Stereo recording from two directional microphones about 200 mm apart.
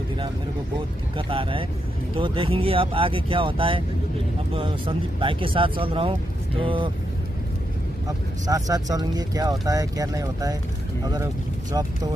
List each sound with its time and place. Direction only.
1.1 s speech: 25° right (ahead or behind)
8.5 s speech: 20° right (ahead or behind)